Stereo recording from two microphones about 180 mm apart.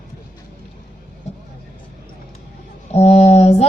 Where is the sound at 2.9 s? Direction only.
35° left (ahead or behind).